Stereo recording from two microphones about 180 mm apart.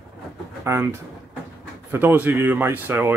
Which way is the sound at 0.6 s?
15° right (ahead or behind).